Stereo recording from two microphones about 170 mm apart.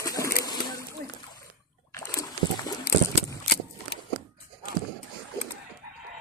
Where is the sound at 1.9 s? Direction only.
15° left (ahead or behind).